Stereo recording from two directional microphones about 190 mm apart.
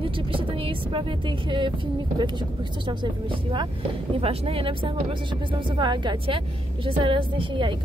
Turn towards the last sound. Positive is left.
turn(degrees=-25)  # may be behind; listen again after turning